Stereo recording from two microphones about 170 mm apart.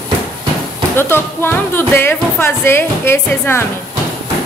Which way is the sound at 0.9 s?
15° left (ahead or behind).